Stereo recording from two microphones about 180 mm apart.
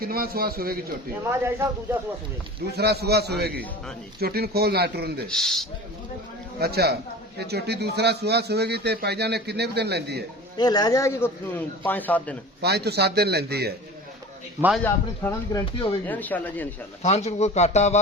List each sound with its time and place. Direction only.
0.0 s a man's voice: 55° right (ahead or behind)
1.3 s speech: 15° right (ahead or behind)
2.7 s a man's voice: 65° right (ahead or behind)
5.3 s a man's voice: 5° left (ahead or behind)
6.6 s a man's voice: 60° right (ahead or behind)
10.6 s a man's voice: 20° left (ahead or behind)
12.6 s a man's voice: 65° right (ahead or behind)
14.8 s a man's voice: 15° left (ahead or behind)
15.6 s speech: 30° left (ahead or behind)
16.0 s a man's voice: 10° left (ahead or behind)
17.0 s speech: 40° left (ahead or behind)